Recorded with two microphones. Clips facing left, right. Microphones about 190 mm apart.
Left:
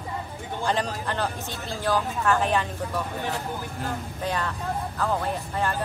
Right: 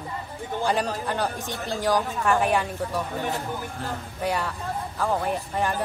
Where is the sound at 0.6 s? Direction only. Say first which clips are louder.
Right 1 dB; 10° right (ahead or behind).